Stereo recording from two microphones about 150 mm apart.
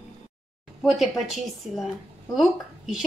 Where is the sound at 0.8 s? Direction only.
Centre (ahead or behind).